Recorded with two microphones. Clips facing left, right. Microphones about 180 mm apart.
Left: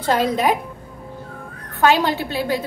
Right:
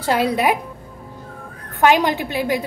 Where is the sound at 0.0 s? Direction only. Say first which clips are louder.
Even; 10° right (ahead or behind).